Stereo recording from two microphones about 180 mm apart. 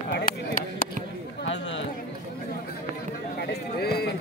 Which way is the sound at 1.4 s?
90° left.